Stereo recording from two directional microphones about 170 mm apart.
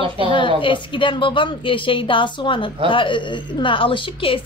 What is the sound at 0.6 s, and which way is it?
A woman's voice, 30° left (ahead or behind).